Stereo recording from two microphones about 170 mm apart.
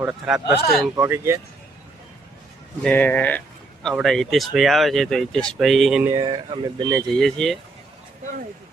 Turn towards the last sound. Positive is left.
turn(degrees=5)  # may be behind; listen again after turning